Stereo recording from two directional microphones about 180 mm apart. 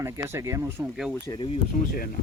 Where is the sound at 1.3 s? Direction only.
15° left (ahead or behind).